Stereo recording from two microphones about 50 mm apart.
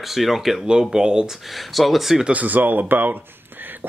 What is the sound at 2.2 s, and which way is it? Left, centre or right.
Speech, right.